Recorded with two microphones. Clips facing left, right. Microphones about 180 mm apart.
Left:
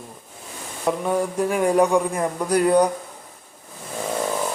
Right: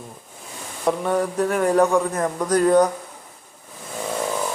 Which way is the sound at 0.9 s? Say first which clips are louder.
Right 1 dB; 5° left (ahead or behind).